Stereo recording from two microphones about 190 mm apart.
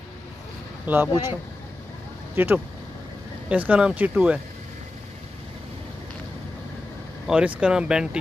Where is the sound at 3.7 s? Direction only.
5° right (ahead or behind).